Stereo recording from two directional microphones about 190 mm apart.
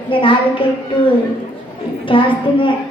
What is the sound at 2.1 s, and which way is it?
Speech, 25° left (ahead or behind).